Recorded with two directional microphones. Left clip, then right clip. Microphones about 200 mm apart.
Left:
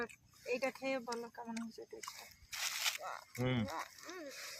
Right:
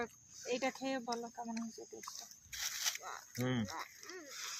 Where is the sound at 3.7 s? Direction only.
65° left (ahead or behind).